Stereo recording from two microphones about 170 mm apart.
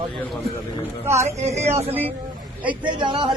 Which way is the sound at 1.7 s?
35° right (ahead or behind).